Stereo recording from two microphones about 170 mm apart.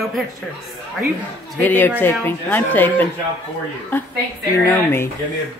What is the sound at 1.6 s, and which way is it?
Speech, 10° left (ahead or behind).